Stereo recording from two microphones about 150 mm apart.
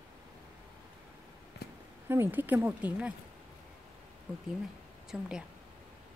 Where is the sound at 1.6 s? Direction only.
90° left.